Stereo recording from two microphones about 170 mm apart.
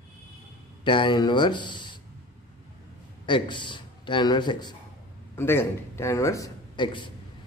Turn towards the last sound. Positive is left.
turn(degrees=30)  # may be behind; listen again after turning